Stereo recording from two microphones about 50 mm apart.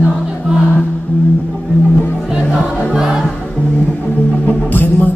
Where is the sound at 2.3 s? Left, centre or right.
Centre.